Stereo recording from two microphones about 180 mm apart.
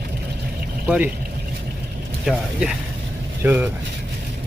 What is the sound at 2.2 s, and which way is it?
Speech, centre (ahead or behind).